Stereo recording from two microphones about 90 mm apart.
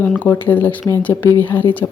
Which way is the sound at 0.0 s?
20° left (ahead or behind).